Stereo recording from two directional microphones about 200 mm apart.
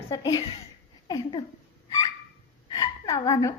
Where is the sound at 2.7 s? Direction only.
20° left (ahead or behind).